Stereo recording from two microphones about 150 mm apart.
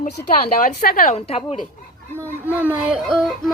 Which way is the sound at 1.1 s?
45° left (ahead or behind).